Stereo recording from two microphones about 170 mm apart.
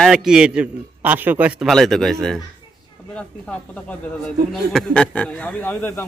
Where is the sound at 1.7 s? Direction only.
Centre (ahead or behind).